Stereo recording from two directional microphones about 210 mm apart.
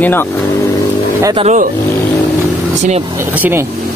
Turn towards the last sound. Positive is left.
turn(degrees=-10)  # may be behind; listen again after turning